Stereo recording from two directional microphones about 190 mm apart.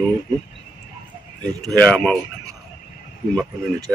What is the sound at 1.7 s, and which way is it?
Speech, 5° left (ahead or behind).